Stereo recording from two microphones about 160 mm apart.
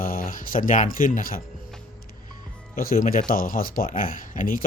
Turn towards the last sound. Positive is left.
turn(degrees=55)  # may be behind; listen again after turning